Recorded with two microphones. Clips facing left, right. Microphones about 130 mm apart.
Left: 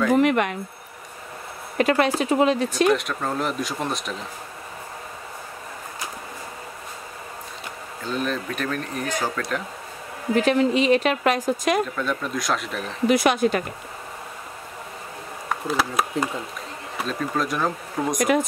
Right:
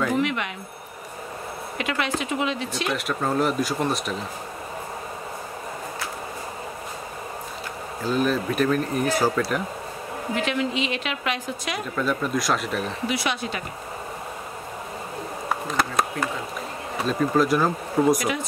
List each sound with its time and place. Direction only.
0.2 s a woman's voice: 50° left (ahead or behind)
1.8 s speech: 40° left (ahead or behind)
2.9 s speech: 5° right (ahead or behind)
8.0 s speech: 5° right (ahead or behind)
10.3 s a woman's voice: 40° left (ahead or behind)
11.9 s speech: 5° right (ahead or behind)
13.1 s a woman's voice: 50° left (ahead or behind)
15.6 s speech: 5° left (ahead or behind)